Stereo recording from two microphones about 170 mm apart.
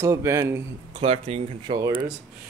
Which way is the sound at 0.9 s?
35° right (ahead or behind).